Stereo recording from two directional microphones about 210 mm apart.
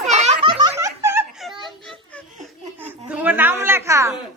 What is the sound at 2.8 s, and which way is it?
A child's voice, 10° right (ahead or behind).